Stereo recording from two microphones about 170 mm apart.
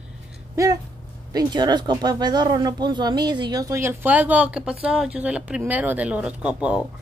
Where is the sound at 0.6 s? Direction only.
20° right (ahead or behind).